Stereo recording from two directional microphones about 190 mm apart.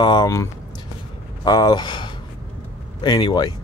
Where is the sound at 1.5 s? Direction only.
20° left (ahead or behind).